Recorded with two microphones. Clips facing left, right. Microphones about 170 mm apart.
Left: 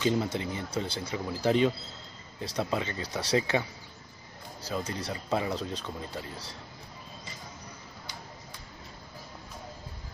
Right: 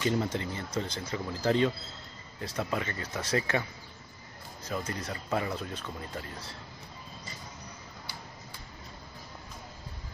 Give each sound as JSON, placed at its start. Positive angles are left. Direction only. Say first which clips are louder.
{"t": 0.0, "sound": "speech", "louder": "left 2 dB", "side_deg": 15}
{"t": 4.6, "sound": "speech", "louder": "left 1 dB", "side_deg": 10}